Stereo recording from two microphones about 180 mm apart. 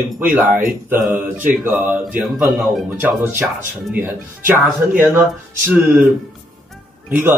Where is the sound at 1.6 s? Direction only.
10° right (ahead or behind).